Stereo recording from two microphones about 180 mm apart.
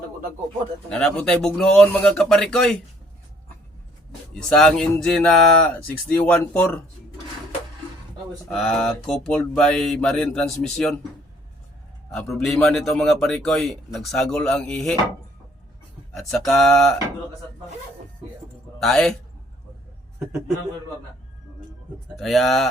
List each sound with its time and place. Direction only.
0.9 s a man's voice: 5° left (ahead or behind)
4.4 s a man's voice: 5° left (ahead or behind)
8.4 s a man's voice: 5° left (ahead or behind)
12.1 s a man's voice: centre (ahead or behind)
16.1 s a man's voice: centre (ahead or behind)
18.8 s a man's voice: centre (ahead or behind)
22.1 s a man's voice: centre (ahead or behind)